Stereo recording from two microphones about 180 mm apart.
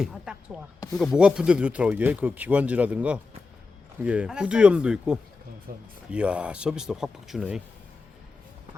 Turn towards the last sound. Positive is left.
turn(degrees=-5)  # may be behind; listen again after turning